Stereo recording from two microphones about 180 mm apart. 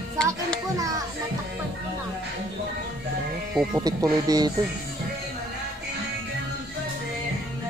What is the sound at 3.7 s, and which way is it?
Speech, 20° right (ahead or behind).